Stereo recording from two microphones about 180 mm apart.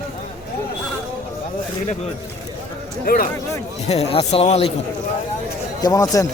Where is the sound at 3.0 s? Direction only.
55° left (ahead or behind).